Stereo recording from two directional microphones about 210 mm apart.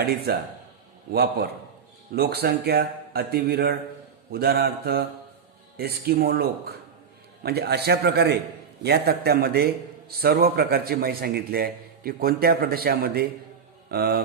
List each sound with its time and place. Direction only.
0.3 s a man's voice: 45° right (ahead or behind)